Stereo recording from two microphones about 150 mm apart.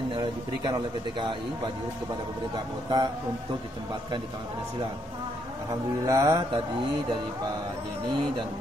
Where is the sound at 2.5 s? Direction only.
30° right (ahead or behind).